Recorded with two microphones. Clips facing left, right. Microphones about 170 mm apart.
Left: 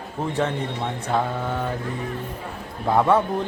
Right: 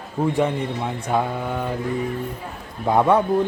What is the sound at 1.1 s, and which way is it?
Mantra, 10° right (ahead or behind).